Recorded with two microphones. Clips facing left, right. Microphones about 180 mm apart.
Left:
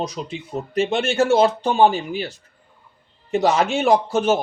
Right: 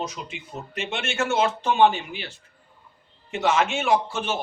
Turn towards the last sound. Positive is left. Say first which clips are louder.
# left 6 dB
turn(degrees=40)  # may be behind; listen again after turning